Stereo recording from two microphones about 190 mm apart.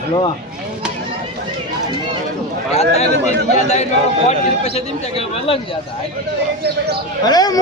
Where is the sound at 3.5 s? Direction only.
35° left (ahead or behind).